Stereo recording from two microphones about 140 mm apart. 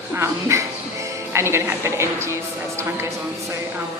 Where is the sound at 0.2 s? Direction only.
20° right (ahead or behind).